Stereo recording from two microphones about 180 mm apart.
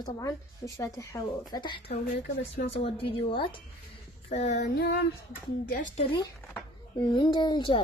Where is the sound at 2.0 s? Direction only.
35° left (ahead or behind).